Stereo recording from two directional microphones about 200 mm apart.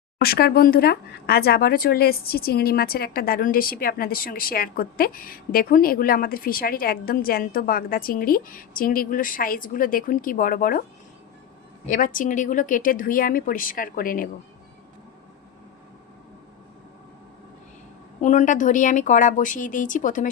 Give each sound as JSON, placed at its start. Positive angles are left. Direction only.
{"t": 0.2, "sound": "speech", "side_deg": 50}
{"t": 11.9, "sound": "speech", "side_deg": 45}
{"t": 18.2, "sound": "speech", "side_deg": 35}